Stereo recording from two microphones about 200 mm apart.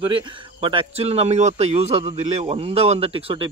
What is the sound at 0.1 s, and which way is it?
Speech, 25° right (ahead or behind).